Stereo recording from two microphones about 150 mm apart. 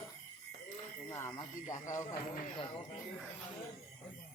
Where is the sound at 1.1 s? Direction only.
20° left (ahead or behind).